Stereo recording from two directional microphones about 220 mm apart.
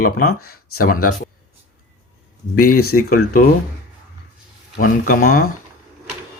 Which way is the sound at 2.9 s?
40° left (ahead or behind).